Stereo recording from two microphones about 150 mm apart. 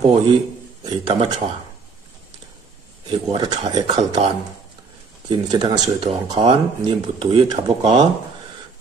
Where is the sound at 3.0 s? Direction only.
30° right (ahead or behind).